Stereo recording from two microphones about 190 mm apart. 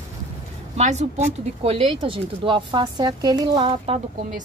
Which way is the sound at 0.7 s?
35° right (ahead or behind).